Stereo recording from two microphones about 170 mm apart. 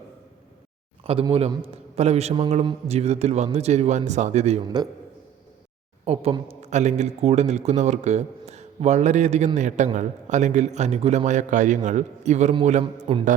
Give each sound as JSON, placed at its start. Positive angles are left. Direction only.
{"t": 1.0, "sound": "a man's voice", "side_deg": -35}
{"t": 6.1, "sound": "a man's voice", "side_deg": -35}
{"t": 12.8, "sound": "a man's voice", "side_deg": -35}